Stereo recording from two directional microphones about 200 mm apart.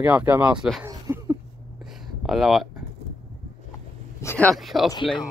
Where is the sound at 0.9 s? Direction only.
20° right (ahead or behind).